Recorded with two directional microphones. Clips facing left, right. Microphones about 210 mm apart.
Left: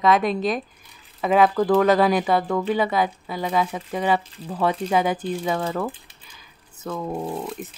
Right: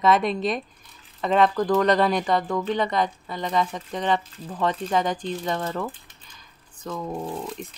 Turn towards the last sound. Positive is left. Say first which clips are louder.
# left 2 dB
turn(degrees=5)  # may be behind; listen again after turning